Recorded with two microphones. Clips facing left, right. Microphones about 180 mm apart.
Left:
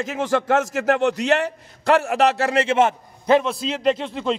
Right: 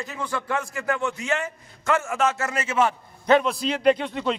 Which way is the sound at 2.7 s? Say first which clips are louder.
Left 5 dB; 25° left (ahead or behind).